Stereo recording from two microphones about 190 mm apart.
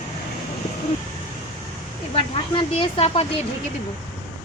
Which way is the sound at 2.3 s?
25° left (ahead or behind).